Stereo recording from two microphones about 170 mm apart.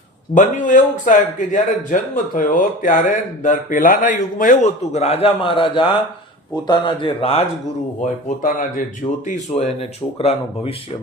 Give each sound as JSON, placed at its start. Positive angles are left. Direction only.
{"t": 0.3, "sound": "speech", "side_deg": 50}
{"t": 8.0, "sound": "speech", "side_deg": 50}
{"t": 10.2, "sound": "speech", "side_deg": 35}